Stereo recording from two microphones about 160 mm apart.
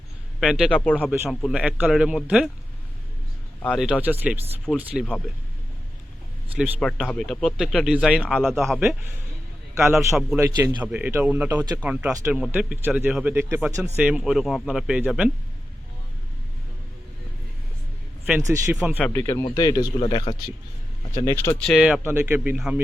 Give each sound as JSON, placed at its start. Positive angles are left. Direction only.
{"t": 0.3, "sound": "a man's voice", "side_deg": -5}
{"t": 0.7, "sound": "speech", "side_deg": 10}
{"t": 4.0, "sound": "speech", "side_deg": -10}
{"t": 6.7, "sound": "speech", "side_deg": 0}
{"t": 8.8, "sound": "speech", "side_deg": -15}
{"t": 10.2, "sound": "speech", "side_deg": -5}
{"t": 10.4, "sound": "a man's voice", "side_deg": -25}
{"t": 10.9, "sound": "speech", "side_deg": -10}
{"t": 18.3, "sound": "a man's voice", "side_deg": -20}
{"t": 18.7, "sound": "speech", "side_deg": -5}
{"t": 18.9, "sound": "speech", "side_deg": 10}
{"t": 20.0, "sound": "speech", "side_deg": 35}
{"t": 21.2, "sound": "speech", "side_deg": 15}
{"t": 21.6, "sound": "speech", "side_deg": 0}